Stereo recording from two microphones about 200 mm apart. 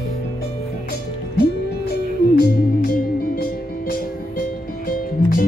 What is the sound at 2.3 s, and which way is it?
Music, 50° left (ahead or behind).